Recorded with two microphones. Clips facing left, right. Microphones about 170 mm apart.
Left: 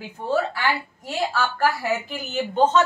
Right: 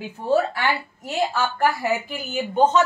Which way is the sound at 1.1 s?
20° right (ahead or behind).